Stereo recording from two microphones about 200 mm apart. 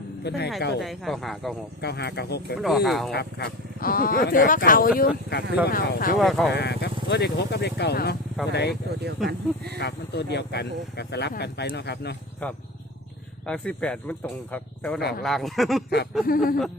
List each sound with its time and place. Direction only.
0.3 s speech: 55° left (ahead or behind)
0.8 s speech: centre (ahead or behind)
1.8 s speech: 55° left (ahead or behind)
2.6 s speech: centre (ahead or behind)
3.1 s speech: 55° left (ahead or behind)
6.1 s speech: centre (ahead or behind)
6.5 s speech: 55° left (ahead or behind)
9.0 s speech: 55° right (ahead or behind)
9.7 s speech: 55° left (ahead or behind)
12.4 s speech: 5° left (ahead or behind)
16.2 s speech: 45° left (ahead or behind)